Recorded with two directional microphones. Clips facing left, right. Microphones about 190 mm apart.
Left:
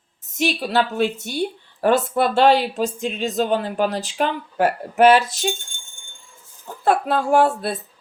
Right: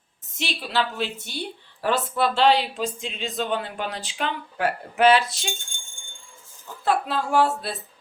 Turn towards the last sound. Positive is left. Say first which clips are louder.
# left 5 dB
turn(degrees=50)  # may be behind; listen again after turning